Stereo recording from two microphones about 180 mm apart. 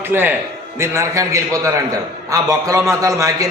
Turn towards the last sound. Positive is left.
turn(degrees=-20)  # may be behind; listen again after turning